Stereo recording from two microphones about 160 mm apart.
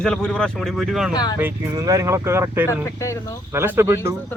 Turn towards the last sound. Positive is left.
turn(degrees=-15)  # may be behind; listen again after turning